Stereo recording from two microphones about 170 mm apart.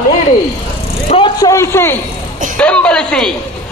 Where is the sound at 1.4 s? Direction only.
20° left (ahead or behind).